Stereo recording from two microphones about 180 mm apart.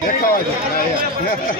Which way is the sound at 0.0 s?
50° left (ahead or behind).